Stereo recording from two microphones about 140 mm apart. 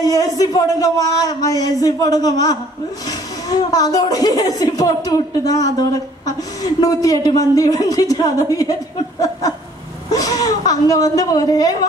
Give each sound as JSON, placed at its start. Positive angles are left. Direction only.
{"t": 0.0, "sound": "a woman's voice", "side_deg": 25}
{"t": 10.1, "sound": "a woman's voice", "side_deg": 25}